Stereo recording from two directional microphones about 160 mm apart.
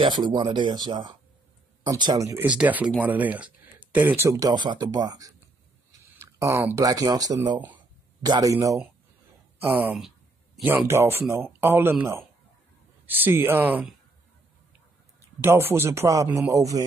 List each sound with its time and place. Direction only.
0.0 s speech: 30° right (ahead or behind)
2.4 s speech: 10° right (ahead or behind)
9.6 s a sound: 10° right (ahead or behind)
10.9 s speech: 15° right (ahead or behind)
15.4 s speech: 15° right (ahead or behind)